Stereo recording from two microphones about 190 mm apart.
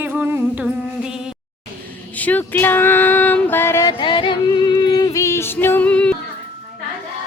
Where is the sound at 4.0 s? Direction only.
25° left (ahead or behind); by 6.1 s 5° left (ahead or behind).